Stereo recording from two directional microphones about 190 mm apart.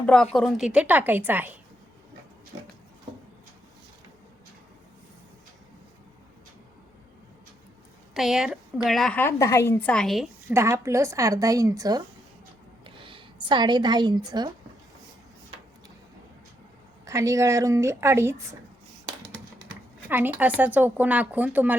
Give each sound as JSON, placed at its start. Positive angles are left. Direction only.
{"t": 0.0, "sound": "speech", "side_deg": 5}
{"t": 8.1, "sound": "a woman's voice", "side_deg": 0}
{"t": 10.5, "sound": "a woman's voice", "side_deg": -15}
{"t": 17.1, "sound": "speech", "side_deg": -15}
{"t": 20.1, "sound": "speech", "side_deg": -10}